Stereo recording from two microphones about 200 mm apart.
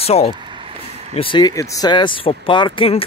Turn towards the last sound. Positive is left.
turn(degrees=25)  # may be behind; listen again after turning